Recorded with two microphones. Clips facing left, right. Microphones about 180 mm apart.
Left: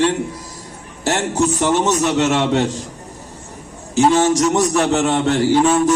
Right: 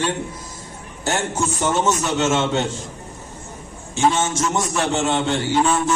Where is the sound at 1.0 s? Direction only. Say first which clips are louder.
Left 5 dB; 35° left (ahead or behind).